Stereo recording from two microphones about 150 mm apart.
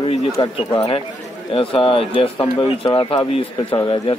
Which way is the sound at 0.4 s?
35° left (ahead or behind).